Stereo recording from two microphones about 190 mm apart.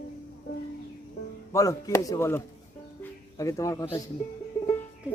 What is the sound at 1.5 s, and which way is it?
Speech, 15° left (ahead or behind).